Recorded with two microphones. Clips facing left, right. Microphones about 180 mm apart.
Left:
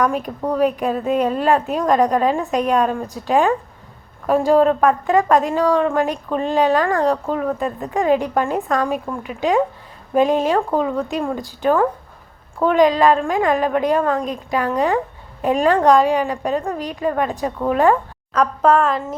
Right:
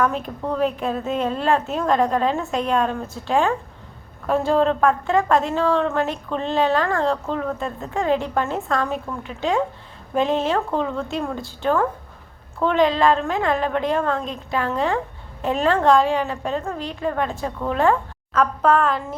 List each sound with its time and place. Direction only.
0.0 s a woman's voice: 15° left (ahead or behind)